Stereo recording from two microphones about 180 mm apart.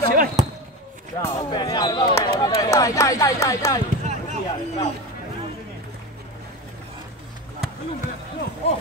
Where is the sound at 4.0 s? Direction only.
40° right (ahead or behind).